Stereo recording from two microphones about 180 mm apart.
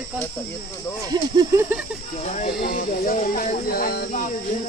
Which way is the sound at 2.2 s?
40° left (ahead or behind).